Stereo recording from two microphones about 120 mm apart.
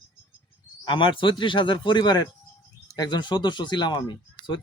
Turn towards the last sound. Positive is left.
turn(degrees=40)  # may be behind; listen again after turning